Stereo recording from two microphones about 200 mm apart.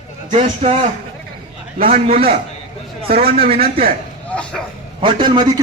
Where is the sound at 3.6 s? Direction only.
45° right (ahead or behind).